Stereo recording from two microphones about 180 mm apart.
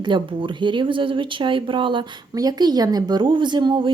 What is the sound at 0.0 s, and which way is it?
Speech, 25° right (ahead or behind).